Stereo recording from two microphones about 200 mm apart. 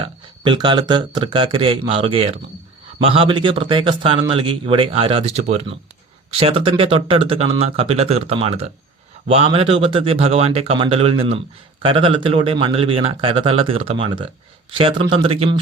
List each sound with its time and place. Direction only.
0.0 s speech: 25° right (ahead or behind)